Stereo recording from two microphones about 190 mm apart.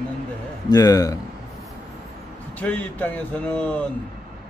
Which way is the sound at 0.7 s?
20° left (ahead or behind).